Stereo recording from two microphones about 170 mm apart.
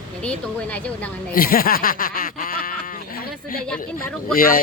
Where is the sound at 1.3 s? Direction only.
60° left (ahead or behind).